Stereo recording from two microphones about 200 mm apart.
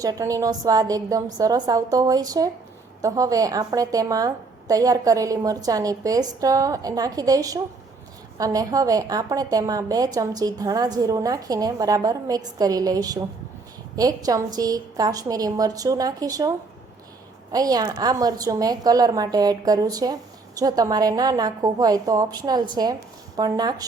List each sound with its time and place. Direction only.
0.0 s a woman's voice: 15° right (ahead or behind)